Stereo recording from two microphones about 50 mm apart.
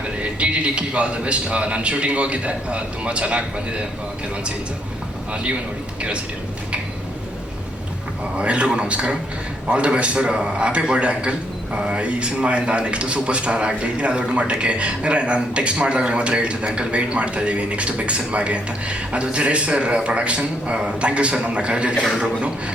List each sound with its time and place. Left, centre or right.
0.2 s a man's voice: right
5.3 s a man's voice: right
8.4 s a man's voice: right